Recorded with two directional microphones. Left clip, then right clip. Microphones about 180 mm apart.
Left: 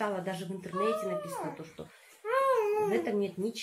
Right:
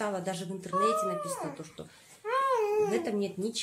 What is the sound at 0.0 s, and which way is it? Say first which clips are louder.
Speech: even; 10° right (ahead or behind).